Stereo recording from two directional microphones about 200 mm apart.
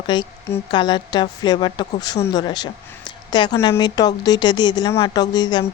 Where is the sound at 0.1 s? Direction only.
15° left (ahead or behind).